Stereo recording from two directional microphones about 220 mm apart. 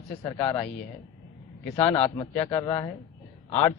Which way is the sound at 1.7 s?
15° left (ahead or behind).